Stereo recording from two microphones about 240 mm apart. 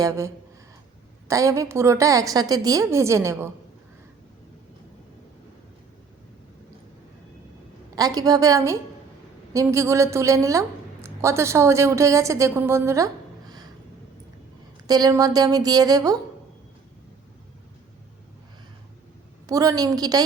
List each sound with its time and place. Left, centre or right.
0.0 s a woman's voice: centre
1.3 s a woman's voice: centre
7.9 s a woman's voice: centre
14.8 s a woman's voice: centre
19.5 s a woman's voice: centre